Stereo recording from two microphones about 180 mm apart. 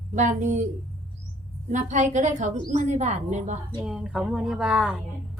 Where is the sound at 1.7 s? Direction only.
45° right (ahead or behind).